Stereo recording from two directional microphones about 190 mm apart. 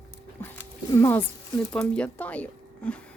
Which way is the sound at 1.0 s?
10° left (ahead or behind).